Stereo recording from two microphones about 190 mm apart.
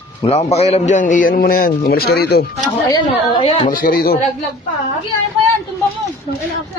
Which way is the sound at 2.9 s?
30° left (ahead or behind).